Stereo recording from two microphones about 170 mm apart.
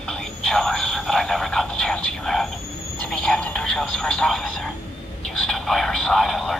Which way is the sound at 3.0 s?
5° left (ahead or behind).